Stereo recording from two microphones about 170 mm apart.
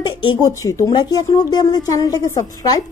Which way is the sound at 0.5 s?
15° left (ahead or behind).